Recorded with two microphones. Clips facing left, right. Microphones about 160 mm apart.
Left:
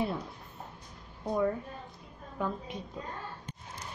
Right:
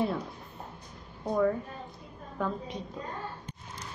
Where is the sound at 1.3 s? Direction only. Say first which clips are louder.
Right 3 dB; 5° left (ahead or behind).